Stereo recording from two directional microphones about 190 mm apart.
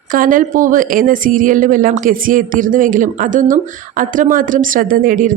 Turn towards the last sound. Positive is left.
turn(degrees=-45)  # may be behind; listen again after turning